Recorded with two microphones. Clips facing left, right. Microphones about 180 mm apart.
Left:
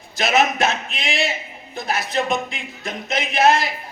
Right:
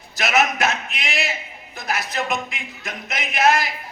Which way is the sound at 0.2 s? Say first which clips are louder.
Left 2 dB; 25° left (ahead or behind).